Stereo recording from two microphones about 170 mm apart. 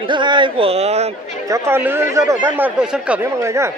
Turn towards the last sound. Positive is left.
turn(degrees=-15)  # may be behind; listen again after turning